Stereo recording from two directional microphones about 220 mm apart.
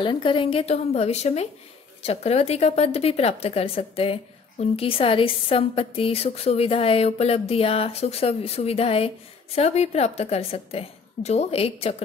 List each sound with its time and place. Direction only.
0.0 s a woman's voice: 25° left (ahead or behind)